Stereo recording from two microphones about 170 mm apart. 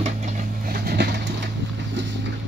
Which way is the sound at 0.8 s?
75° right (ahead or behind).